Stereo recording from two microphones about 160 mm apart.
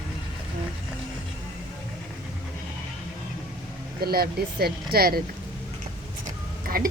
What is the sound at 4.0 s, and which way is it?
Speech, 75° right (ahead or behind).